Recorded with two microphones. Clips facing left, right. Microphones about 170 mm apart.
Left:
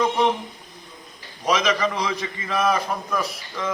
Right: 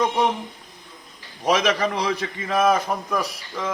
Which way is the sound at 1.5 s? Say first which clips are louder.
Even; 55° right (ahead or behind).